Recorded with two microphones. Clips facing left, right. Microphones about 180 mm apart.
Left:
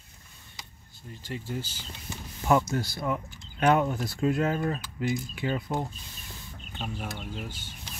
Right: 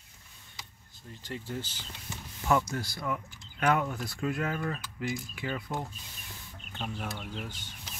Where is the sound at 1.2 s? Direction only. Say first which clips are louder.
Left 2 dB; 10° left (ahead or behind).